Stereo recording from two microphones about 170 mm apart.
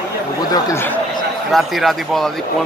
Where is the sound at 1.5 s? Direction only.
Centre (ahead or behind).